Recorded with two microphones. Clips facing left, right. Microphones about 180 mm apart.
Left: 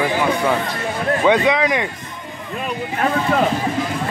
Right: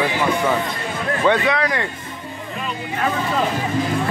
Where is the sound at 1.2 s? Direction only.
15° left (ahead or behind).